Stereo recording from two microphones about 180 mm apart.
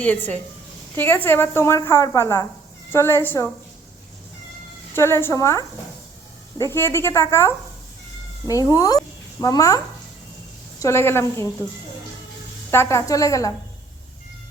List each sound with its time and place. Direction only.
0.0 s a woman's voice: 10° left (ahead or behind)
4.9 s a woman's voice: 15° left (ahead or behind)
12.7 s a woman's voice: 15° left (ahead or behind)